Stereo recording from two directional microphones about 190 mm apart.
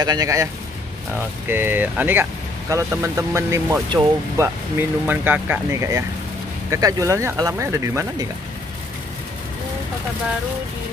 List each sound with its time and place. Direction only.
0.0 s speech: 20° right (ahead or behind)
1.5 s speech: 10° right (ahead or behind)